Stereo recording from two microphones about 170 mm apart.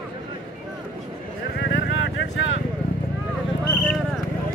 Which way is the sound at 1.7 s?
90° left.